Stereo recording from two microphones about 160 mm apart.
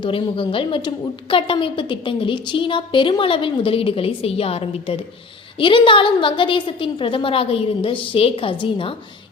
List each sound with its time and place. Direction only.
0.0 s a woman's voice: 35° left (ahead or behind)